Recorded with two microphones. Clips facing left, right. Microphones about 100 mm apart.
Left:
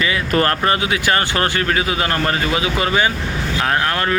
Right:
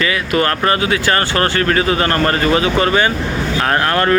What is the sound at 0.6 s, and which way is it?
Speech, 20° left (ahead or behind).